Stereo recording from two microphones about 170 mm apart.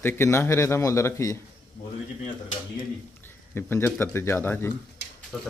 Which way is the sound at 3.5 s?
10° left (ahead or behind).